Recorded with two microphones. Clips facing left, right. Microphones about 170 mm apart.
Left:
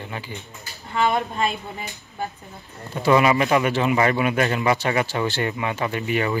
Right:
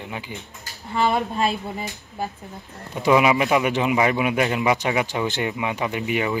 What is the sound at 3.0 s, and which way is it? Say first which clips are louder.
Speech: even; 10° right (ahead or behind).